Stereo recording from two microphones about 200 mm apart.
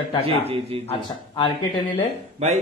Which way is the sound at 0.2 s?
30° right (ahead or behind).